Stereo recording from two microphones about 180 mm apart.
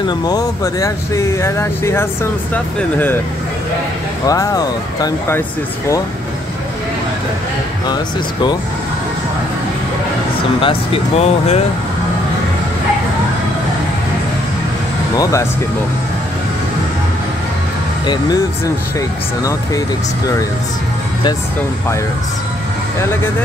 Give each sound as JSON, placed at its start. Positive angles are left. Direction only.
{"t": 0.2, "sound": "speech", "side_deg": 20}
{"t": 4.3, "sound": "speech", "side_deg": 20}
{"t": 7.9, "sound": "speech", "side_deg": 25}
{"t": 10.6, "sound": "speech", "side_deg": 30}
{"t": 18.0, "sound": "speech", "side_deg": 25}